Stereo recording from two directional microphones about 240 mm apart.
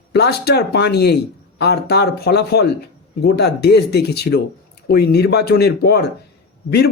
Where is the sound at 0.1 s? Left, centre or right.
Left.